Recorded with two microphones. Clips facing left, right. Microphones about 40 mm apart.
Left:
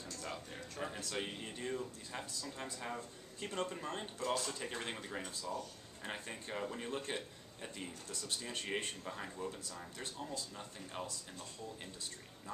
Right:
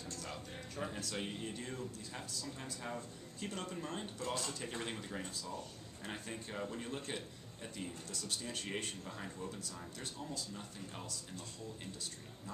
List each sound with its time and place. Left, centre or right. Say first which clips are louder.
0.2 s music: left 1 dB; centre
1.2 s a man's voice: even; centre
4.6 s a man's voice: even; centre